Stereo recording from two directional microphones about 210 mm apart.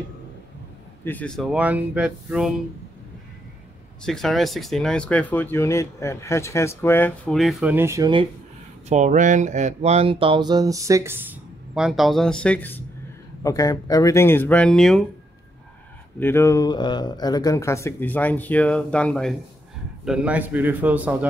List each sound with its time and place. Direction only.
1.0 s speech: 5° left (ahead or behind)
4.0 s speech: centre (ahead or behind); by 8.3 s 20° right (ahead or behind)
8.8 s speech: 35° right (ahead or behind); by 15.0 s centre (ahead or behind)
16.2 s speech: 10° left (ahead or behind); by 21.3 s 5° right (ahead or behind)